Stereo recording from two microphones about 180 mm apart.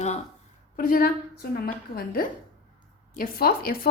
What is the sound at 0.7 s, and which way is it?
A woman's voice, 50° left (ahead or behind).